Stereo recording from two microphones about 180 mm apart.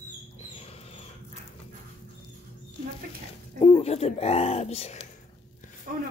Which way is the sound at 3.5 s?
35° left (ahead or behind).